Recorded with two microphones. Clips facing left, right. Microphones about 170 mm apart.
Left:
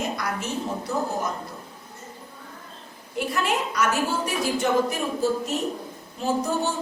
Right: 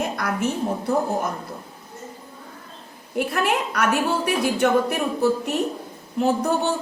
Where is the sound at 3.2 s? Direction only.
60° right (ahead or behind).